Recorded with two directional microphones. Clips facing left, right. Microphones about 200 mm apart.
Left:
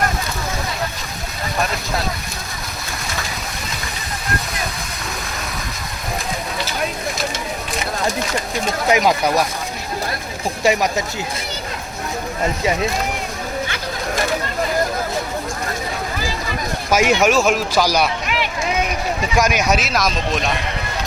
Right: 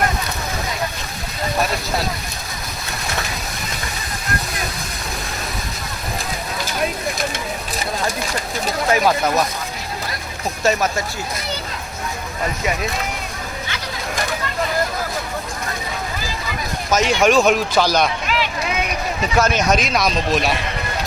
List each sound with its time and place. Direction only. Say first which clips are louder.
8.9 s speech: left 1 dB; 15° left (ahead or behind)
10.6 s speech: left 1 dB; 15° left (ahead or behind)
16.9 s speech: even; 10° left (ahead or behind)
19.4 s a man's voice: right 1 dB; 10° left (ahead or behind)